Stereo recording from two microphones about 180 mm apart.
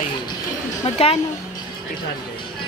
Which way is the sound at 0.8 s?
30° left (ahead or behind).